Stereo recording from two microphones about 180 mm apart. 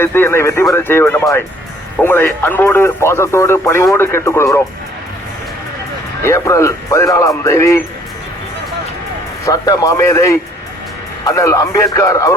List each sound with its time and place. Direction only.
0.0 s speech: 15° left (ahead or behind)
6.2 s speech: 15° left (ahead or behind)
9.5 s speech: 20° left (ahead or behind)